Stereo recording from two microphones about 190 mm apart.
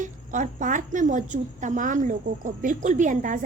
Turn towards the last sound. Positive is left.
turn(degrees=-40)  # may be behind; listen again after turning